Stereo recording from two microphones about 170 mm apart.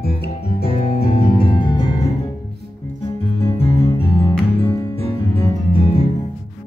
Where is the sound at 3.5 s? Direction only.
35° left (ahead or behind).